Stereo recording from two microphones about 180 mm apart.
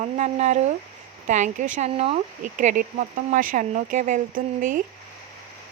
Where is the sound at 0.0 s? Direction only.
40° right (ahead or behind).